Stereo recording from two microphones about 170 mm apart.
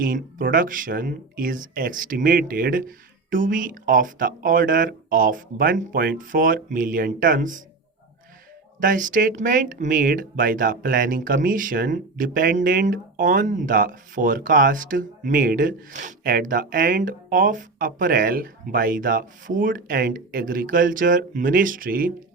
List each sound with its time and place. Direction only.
0.0 s speech: 55° right (ahead or behind)
8.8 s speech: 50° right (ahead or behind)